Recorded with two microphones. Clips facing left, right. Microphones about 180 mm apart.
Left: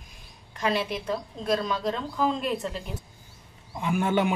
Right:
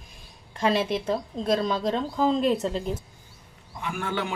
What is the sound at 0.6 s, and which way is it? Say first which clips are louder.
A woman's voice: right 3 dB; 30° right (ahead or behind).